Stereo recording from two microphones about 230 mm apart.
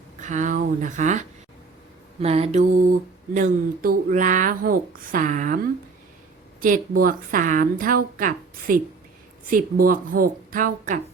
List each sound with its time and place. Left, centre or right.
0.2 s speech: right
2.2 s mantra: right
3.3 s speech: right
6.6 s speech: right